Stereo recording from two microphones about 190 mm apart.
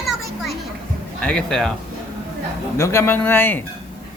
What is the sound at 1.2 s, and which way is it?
Speech, 5° left (ahead or behind).